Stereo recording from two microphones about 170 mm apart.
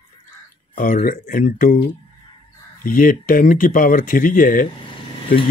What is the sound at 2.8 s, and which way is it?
Speech, 55° left (ahead or behind).